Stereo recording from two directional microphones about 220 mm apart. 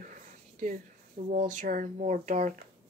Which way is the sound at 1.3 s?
35° right (ahead or behind).